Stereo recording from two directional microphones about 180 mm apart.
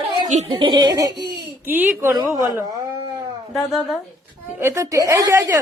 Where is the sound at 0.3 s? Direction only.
35° right (ahead or behind).